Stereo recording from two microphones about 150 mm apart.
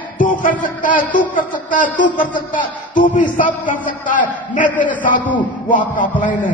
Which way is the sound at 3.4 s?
60° left (ahead or behind).